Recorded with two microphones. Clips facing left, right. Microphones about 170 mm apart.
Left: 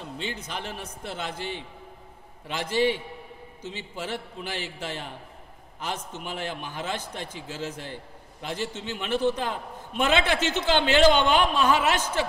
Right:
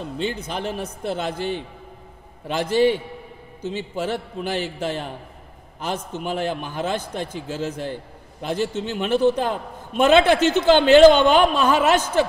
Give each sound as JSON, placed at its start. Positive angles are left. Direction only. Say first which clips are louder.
{"t": 0.2, "sound": "a man's voice", "louder": "right 8 dB", "side_deg": -40}